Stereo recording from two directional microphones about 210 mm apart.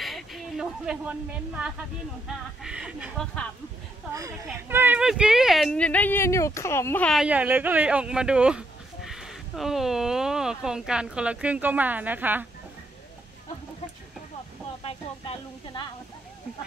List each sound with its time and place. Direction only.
0.0 s a sound: centre (ahead or behind)
2.2 s speech: 5° right (ahead or behind)
4.5 s speech: 10° right (ahead or behind)
14.8 s speech: 25° left (ahead or behind)